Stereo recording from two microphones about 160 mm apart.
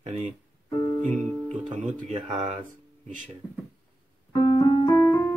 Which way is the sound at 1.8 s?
45° right (ahead or behind).